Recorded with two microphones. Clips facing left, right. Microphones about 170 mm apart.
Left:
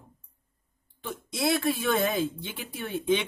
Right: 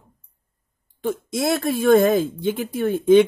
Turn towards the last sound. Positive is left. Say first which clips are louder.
# right 13 dB
turn(degrees=-45)  # may be behind; listen again after turning